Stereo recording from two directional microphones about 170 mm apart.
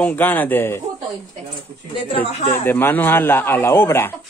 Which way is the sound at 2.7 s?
10° left (ahead or behind).